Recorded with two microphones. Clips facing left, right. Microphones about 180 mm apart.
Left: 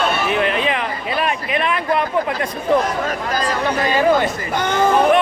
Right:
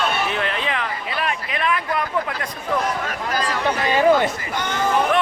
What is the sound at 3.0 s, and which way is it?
Chatter, 40° left (ahead or behind).